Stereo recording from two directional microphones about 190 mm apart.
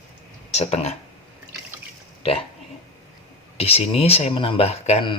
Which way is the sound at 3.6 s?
30° left (ahead or behind).